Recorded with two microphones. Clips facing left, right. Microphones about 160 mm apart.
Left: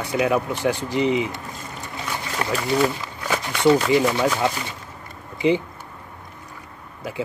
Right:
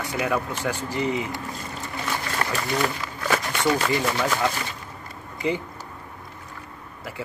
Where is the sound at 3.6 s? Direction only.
10° left (ahead or behind).